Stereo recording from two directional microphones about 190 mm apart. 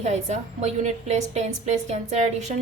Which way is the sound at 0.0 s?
35° right (ahead or behind).